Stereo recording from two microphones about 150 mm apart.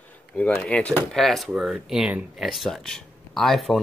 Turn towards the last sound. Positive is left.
turn(degrees=0)  # may be behind; listen again after turning